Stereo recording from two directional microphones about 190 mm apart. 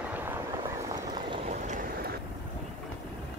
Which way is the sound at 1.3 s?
35° right (ahead or behind).